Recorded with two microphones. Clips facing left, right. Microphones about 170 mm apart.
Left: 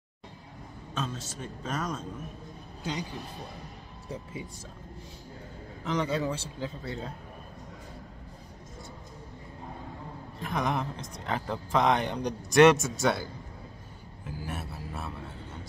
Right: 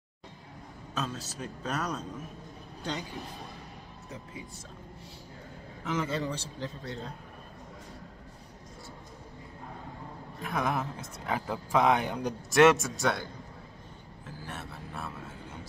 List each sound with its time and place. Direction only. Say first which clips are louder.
0.9 s speech: even; centre (ahead or behind)
2.8 s a man's voice: left 1 dB; 10° left (ahead or behind)
4.1 s speech: left 5 dB; 30° left (ahead or behind)
5.9 s speech: left 2 dB; centre (ahead or behind)
10.4 s speech: left 1 dB; centre (ahead or behind)
14.2 s a sound: left 4 dB; 10° left (ahead or behind)